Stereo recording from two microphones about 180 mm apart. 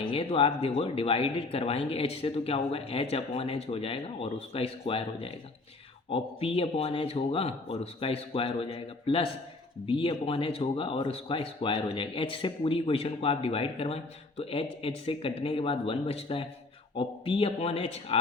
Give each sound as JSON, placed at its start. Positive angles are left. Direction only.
{"t": 0.0, "sound": "speech", "side_deg": 30}